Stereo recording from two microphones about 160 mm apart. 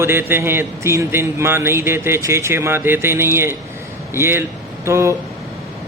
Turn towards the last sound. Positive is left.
turn(degrees=-15)  # may be behind; listen again after turning